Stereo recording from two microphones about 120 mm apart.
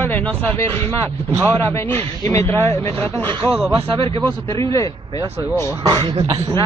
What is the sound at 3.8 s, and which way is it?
Speech, 50° right (ahead or behind).